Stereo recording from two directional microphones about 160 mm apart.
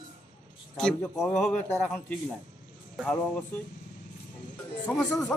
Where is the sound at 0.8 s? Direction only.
5° left (ahead or behind).